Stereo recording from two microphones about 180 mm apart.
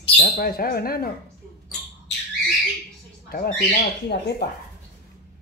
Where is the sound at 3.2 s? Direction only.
50° left (ahead or behind).